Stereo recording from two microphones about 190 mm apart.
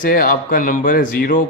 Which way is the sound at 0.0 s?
45° left (ahead or behind).